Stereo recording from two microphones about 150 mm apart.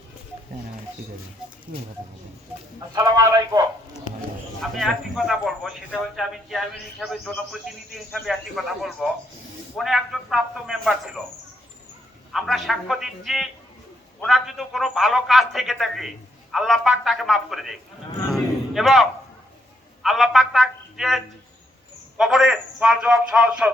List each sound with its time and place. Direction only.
1.4 s a man's voice: 5° right (ahead or behind)
2.9 s a man's voice: 25° right (ahead or behind)
4.7 s a man's voice: centre (ahead or behind)
12.3 s a man's voice: centre (ahead or behind)
18.3 s a sound: centre (ahead or behind)
20.0 s a man's voice: centre (ahead or behind)
22.2 s a man's voice: centre (ahead or behind)